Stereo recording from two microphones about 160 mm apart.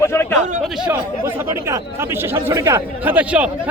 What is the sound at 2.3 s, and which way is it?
Speech, 15° right (ahead or behind).